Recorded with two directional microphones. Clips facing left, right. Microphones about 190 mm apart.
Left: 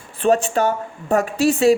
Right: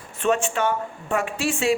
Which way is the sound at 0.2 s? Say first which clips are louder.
Left 5 dB; 35° left (ahead or behind).